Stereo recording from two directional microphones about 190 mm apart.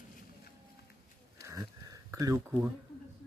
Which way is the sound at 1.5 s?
20° right (ahead or behind).